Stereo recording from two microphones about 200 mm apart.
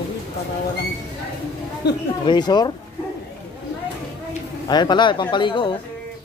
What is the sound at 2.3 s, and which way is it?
Speech, 20° left (ahead or behind).